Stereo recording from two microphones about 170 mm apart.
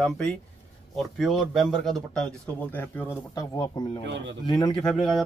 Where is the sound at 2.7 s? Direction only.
10° left (ahead or behind).